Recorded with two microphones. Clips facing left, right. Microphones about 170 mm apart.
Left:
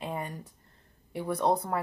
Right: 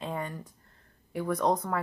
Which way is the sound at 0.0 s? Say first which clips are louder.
Right 1 dB; 15° left (ahead or behind).